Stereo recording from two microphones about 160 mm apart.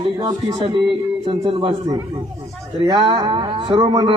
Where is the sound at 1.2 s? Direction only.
35° right (ahead or behind).